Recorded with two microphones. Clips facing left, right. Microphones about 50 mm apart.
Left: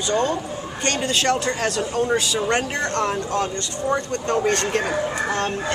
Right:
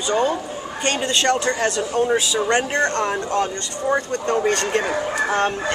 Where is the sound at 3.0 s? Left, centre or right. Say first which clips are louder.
Right 1 dB; right.